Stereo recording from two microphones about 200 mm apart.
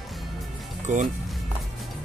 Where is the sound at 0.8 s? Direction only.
40° right (ahead or behind).